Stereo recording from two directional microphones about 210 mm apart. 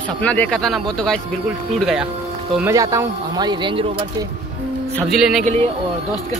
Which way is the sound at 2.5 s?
10° right (ahead or behind).